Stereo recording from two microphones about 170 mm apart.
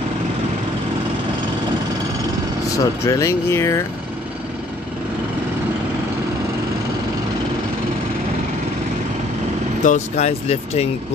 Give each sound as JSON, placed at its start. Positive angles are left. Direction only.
{"t": 3.1, "sound": "speech", "side_deg": 15}
{"t": 9.8, "sound": "speech", "side_deg": 45}